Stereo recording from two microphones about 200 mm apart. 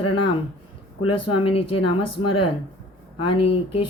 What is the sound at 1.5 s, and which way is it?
Speech, 25° left (ahead or behind).